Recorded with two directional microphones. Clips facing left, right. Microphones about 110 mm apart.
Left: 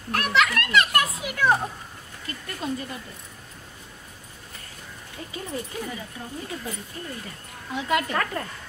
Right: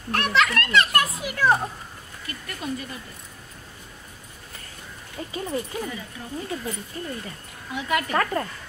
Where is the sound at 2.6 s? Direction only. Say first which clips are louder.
Left 1 dB; 30° left (ahead or behind).